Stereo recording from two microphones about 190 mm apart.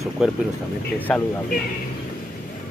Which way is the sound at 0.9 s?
10° left (ahead or behind).